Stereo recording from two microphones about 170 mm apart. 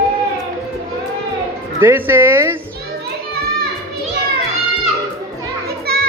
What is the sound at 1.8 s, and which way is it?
Speech, 10° right (ahead or behind).